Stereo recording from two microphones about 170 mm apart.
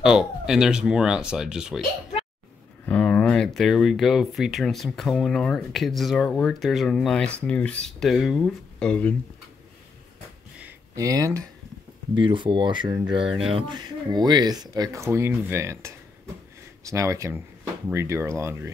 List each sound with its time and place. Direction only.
0.0 s speech: 5° right (ahead or behind)
2.9 s speech: 5° left (ahead or behind)
11.0 s speech: 20° right (ahead or behind)